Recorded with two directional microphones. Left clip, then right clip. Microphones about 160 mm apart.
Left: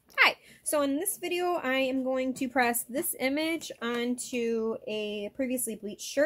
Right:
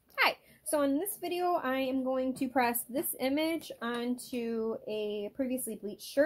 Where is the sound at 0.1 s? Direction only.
35° left (ahead or behind).